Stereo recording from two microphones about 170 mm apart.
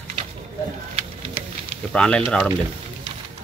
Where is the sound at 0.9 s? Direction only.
35° right (ahead or behind).